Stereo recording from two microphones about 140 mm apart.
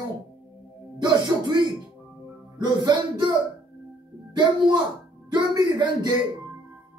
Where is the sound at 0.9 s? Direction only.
30° right (ahead or behind).